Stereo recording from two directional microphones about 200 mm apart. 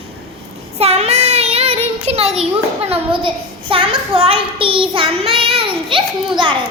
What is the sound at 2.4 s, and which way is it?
A child's voice, 30° right (ahead or behind).